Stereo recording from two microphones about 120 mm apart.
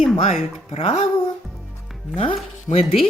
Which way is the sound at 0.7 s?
60° left (ahead or behind).